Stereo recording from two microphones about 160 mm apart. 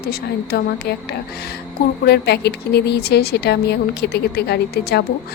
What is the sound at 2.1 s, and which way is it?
A woman's voice, 90° left.